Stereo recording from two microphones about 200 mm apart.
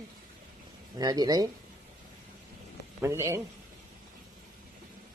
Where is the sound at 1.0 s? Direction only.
20° right (ahead or behind).